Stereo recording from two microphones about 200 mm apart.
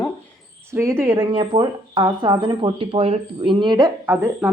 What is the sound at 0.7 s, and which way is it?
Speech, 10° right (ahead or behind).